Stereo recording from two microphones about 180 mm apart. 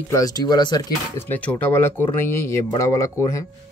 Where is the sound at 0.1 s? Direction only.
20° left (ahead or behind).